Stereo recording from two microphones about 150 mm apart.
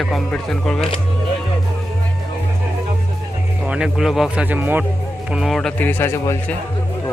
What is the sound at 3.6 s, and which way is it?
A man's voice, 5° right (ahead or behind).